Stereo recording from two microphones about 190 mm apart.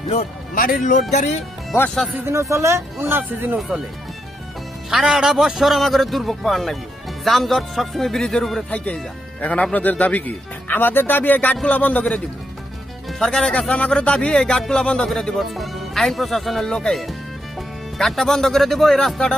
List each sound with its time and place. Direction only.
0.6 s speech: 45° left (ahead or behind)
2.2 s speech: 15° right (ahead or behind)
4.9 s a man's voice: centre (ahead or behind)
13.2 s a man's voice: 5° left (ahead or behind)